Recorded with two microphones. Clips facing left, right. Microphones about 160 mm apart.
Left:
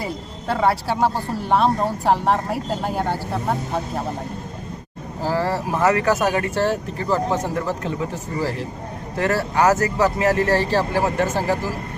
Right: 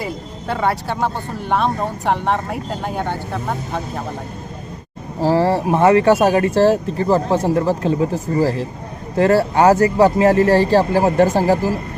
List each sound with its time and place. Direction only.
0.0 s speech: centre (ahead or behind)
5.2 s speech: 30° right (ahead or behind)